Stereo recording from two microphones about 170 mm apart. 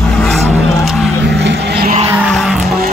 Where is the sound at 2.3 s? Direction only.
Centre (ahead or behind).